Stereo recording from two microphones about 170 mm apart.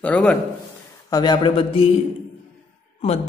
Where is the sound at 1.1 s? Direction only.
25° left (ahead or behind).